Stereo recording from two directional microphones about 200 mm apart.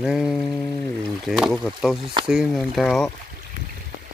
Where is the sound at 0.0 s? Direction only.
Centre (ahead or behind).